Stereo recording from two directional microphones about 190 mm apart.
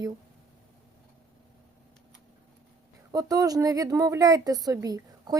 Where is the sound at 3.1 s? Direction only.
20° right (ahead or behind).